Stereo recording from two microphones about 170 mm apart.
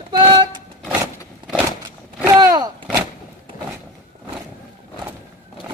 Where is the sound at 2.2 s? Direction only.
20° right (ahead or behind).